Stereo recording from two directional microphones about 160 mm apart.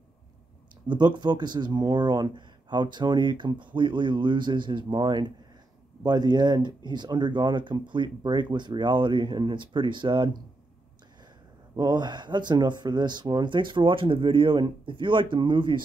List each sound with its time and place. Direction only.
0.8 s speech: 30° right (ahead or behind)
11.7 s a man's voice: 25° right (ahead or behind)